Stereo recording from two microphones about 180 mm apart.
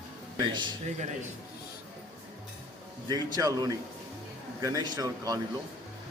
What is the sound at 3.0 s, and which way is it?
A man's voice, 20° right (ahead or behind).